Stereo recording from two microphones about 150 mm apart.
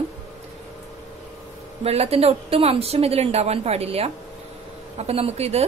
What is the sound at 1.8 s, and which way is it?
Speech, 45° right (ahead or behind).